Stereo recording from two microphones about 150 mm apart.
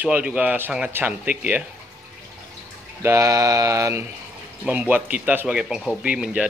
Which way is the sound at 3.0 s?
20° right (ahead or behind).